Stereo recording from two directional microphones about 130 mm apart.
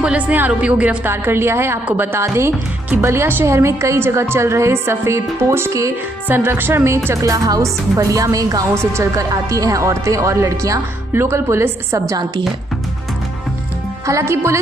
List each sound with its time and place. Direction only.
0.0 s a woman's voice: 10° right (ahead or behind)
14.0 s a woman's voice: 20° right (ahead or behind)